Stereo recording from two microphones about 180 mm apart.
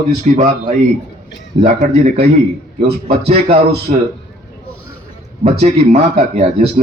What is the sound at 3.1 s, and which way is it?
Speech, 35° right (ahead or behind).